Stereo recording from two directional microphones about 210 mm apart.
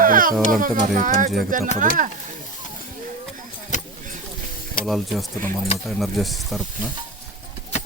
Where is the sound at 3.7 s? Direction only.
35° left (ahead or behind).